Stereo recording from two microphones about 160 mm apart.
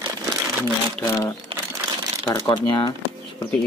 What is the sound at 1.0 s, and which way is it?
Speech, 15° left (ahead or behind).